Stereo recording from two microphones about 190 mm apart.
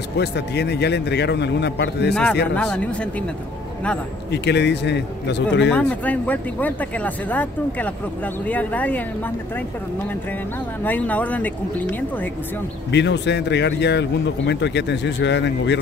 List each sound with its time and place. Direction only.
0.2 s speech: 60° left (ahead or behind)
2.5 s speech: 5° left (ahead or behind)
4.3 s speech: 65° left (ahead or behind)
5.7 s speech: 5° left (ahead or behind)
10.8 s speech: 10° left (ahead or behind)
12.9 s speech: 65° left (ahead or behind)